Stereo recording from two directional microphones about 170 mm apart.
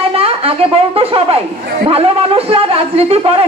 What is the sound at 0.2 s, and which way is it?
A woman's voice, 35° right (ahead or behind).